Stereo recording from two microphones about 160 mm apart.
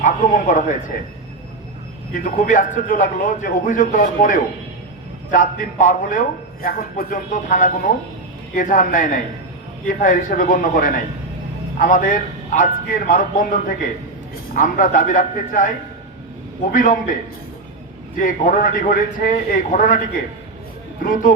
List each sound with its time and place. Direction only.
0.0 s a man's voice: 55° left (ahead or behind)
2.1 s a man's voice: 60° left (ahead or behind)
16.7 s a man's voice: 55° left (ahead or behind)
18.2 s a man's voice: 55° left (ahead or behind)
21.0 s a man's voice: 60° left (ahead or behind)